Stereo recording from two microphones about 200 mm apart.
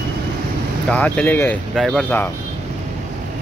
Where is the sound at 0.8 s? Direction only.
5° left (ahead or behind).